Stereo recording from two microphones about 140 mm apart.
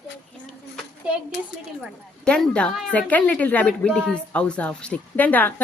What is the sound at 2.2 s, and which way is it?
A woman's voice, 5° left (ahead or behind).